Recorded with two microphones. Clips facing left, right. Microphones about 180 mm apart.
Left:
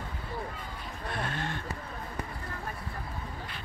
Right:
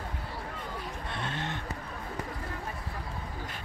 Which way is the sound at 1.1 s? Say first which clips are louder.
Left 2 dB; 25° right (ahead or behind).